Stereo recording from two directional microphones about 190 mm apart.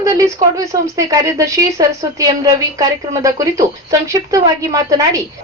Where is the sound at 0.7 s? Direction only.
15° right (ahead or behind).